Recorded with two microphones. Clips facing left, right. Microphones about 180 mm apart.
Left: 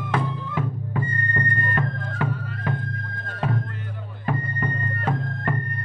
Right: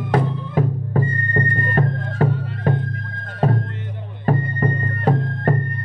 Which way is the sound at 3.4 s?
40° right (ahead or behind).